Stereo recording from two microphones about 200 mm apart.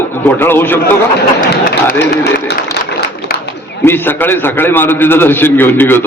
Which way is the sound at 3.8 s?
10° left (ahead or behind).